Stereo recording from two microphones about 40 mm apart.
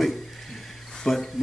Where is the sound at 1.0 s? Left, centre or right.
Centre.